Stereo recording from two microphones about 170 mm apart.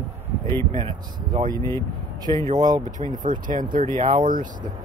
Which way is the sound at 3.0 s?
50° right (ahead or behind).